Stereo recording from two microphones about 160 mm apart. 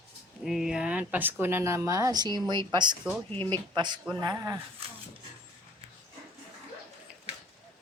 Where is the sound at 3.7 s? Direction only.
30° right (ahead or behind).